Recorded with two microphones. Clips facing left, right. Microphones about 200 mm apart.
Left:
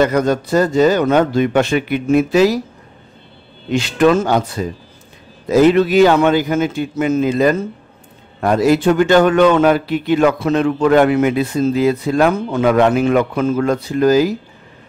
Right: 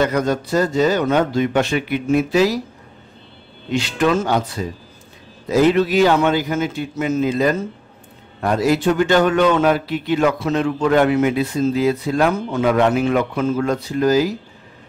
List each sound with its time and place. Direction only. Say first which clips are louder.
0.1 s a man's voice: left 4 dB; 50° left (ahead or behind)
3.7 s a man's voice: left 5 dB; 50° left (ahead or behind)
8.5 s speech: left 4 dB; 55° left (ahead or behind)